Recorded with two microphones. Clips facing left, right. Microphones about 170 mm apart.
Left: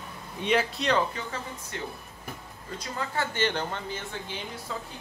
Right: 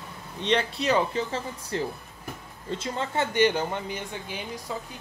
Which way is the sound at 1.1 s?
30° right (ahead or behind).